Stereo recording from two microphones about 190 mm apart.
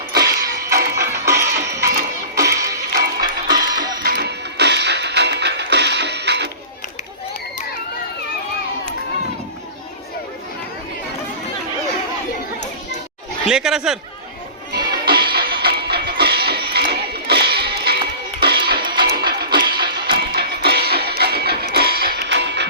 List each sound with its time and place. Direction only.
0.1 s music: 55° right (ahead or behind)
1.2 s music: 15° right (ahead or behind)
4.0 s music: 55° right (ahead or behind)
13.5 s speech: 5° right (ahead or behind)
14.7 s music: 55° right (ahead or behind)
22.3 s music: 65° right (ahead or behind)